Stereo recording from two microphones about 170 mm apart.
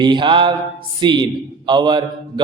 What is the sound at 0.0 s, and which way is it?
A man's voice, 30° right (ahead or behind).